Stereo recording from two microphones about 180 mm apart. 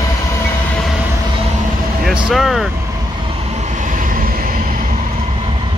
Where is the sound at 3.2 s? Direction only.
30° right (ahead or behind).